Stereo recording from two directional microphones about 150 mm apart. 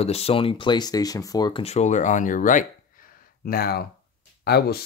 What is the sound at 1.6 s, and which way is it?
Speech, 45° left (ahead or behind).